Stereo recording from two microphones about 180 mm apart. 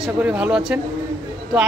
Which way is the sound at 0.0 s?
5° right (ahead or behind).